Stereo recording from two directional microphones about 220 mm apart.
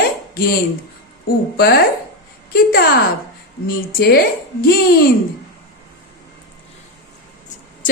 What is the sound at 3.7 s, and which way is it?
A woman's voice, 45° left (ahead or behind).